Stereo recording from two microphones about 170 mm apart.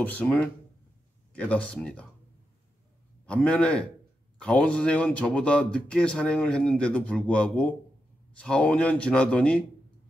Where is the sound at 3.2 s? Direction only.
5° left (ahead or behind).